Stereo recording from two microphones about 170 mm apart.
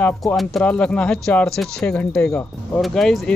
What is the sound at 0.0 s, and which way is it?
Speech, 5° left (ahead or behind).